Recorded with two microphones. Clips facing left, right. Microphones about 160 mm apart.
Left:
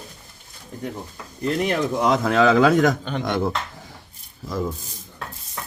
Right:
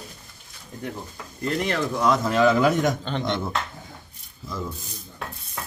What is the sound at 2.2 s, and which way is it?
Speech, 85° left.